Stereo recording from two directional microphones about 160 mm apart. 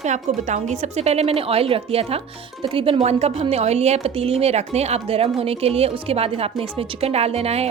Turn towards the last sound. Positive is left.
turn(degrees=-40)  # may be behind; listen again after turning